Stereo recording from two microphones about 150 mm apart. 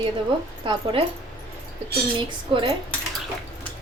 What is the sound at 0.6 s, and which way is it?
Speech, 35° right (ahead or behind).